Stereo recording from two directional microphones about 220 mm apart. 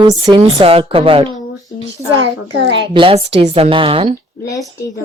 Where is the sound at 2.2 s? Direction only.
55° right (ahead or behind).